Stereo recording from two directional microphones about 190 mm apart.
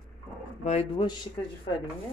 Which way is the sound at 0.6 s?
35° left (ahead or behind).